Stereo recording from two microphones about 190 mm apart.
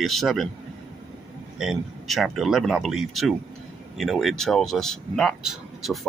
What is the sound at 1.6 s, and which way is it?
Speech, centre (ahead or behind).